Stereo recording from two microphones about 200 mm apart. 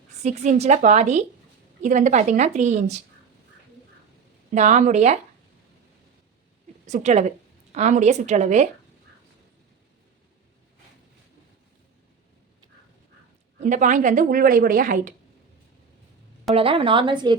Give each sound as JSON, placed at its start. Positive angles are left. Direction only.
{"t": 0.2, "sound": "a woman's voice", "side_deg": -35}
{"t": 4.5, "sound": "a woman's voice", "side_deg": -35}
{"t": 6.8, "sound": "a woman's voice", "side_deg": -35}
{"t": 13.6, "sound": "a woman's voice", "side_deg": -40}
{"t": 16.6, "sound": "speech", "side_deg": -25}